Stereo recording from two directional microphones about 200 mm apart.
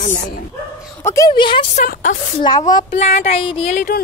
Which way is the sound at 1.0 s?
15° left (ahead or behind).